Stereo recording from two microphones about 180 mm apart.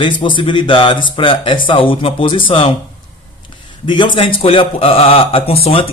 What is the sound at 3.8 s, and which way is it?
A man's voice, 25° left (ahead or behind).